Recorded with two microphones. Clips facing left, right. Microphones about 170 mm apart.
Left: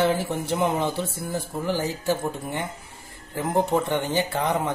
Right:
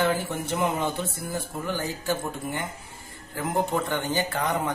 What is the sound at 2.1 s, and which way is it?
Speech, 30° left (ahead or behind).